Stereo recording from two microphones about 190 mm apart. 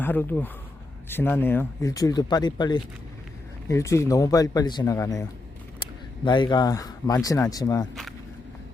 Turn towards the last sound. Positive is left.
turn(degrees=20)  # may be behind; listen again after turning